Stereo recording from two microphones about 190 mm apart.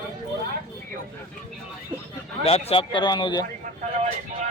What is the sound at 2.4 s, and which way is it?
Speech, 30° left (ahead or behind).